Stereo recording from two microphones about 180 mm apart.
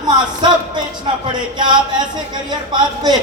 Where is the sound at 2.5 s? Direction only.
25° right (ahead or behind).